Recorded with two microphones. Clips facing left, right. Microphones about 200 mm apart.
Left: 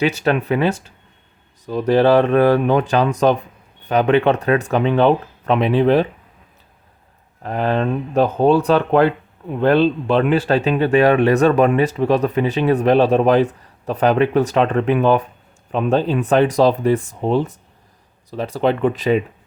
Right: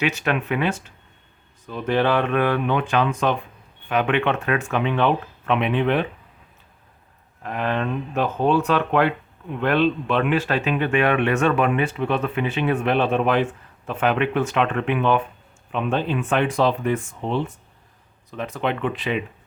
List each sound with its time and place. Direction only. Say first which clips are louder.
0.0 s speech: left 5 dB; 35° left (ahead or behind)
7.4 s speech: left 5 dB; 35° left (ahead or behind)